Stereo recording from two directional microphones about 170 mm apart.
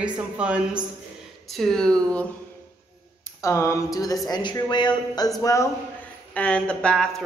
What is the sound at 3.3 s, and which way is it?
Speech, 15° left (ahead or behind).